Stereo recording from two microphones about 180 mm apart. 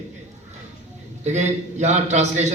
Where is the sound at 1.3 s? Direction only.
40° right (ahead or behind).